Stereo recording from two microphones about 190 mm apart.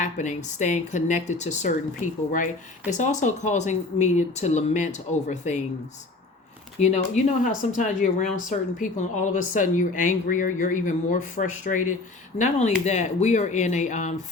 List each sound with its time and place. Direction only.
0.0 s speech: 40° left (ahead or behind)
6.7 s speech: 35° left (ahead or behind)